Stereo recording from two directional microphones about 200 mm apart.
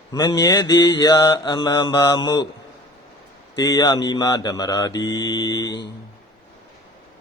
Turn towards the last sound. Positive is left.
turn(degrees=20)  # may be behind; listen again after turning